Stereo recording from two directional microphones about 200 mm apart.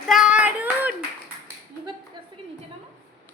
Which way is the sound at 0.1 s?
5° right (ahead or behind).